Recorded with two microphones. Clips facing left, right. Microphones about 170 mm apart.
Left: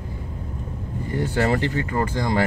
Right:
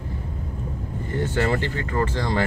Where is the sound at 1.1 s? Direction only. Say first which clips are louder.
Left 1 dB; 15° left (ahead or behind).